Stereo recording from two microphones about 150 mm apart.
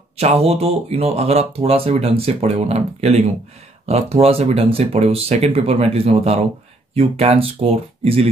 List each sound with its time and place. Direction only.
0.2 s speech: 45° right (ahead or behind)